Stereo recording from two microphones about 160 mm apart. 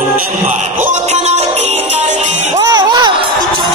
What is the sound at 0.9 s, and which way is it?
Music, 45° right (ahead or behind).